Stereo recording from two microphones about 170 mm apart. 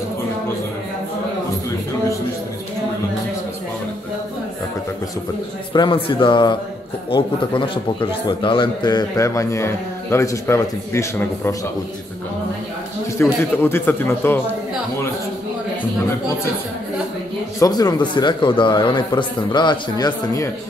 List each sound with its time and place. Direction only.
5.7 s a man's voice: 30° left (ahead or behind)
13.2 s speech: 15° left (ahead or behind)
17.6 s a man's voice: 25° left (ahead or behind)